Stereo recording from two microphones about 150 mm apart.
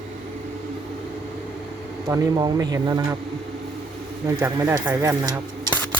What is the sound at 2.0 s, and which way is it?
Speech, 20° right (ahead or behind).